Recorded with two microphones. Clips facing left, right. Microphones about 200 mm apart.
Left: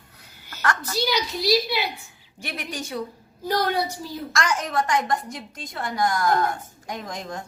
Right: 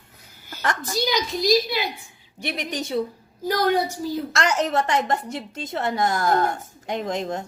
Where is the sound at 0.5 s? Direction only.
20° right (ahead or behind).